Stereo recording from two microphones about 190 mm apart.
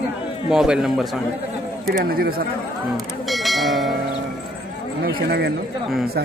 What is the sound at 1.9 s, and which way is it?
Speech, 55° right (ahead or behind).